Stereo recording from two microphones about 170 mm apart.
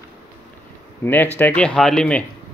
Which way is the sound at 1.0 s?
10° left (ahead or behind).